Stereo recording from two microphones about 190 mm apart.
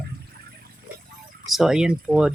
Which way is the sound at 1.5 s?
Centre (ahead or behind).